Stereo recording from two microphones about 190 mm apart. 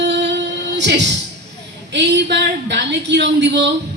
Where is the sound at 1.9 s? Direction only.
65° right (ahead or behind).